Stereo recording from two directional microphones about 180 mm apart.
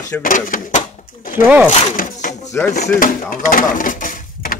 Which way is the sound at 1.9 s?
45° left (ahead or behind).